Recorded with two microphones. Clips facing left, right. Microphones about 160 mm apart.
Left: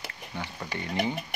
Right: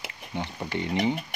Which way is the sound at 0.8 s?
20° right (ahead or behind).